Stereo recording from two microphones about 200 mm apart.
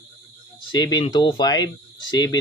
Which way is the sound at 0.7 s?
20° left (ahead or behind).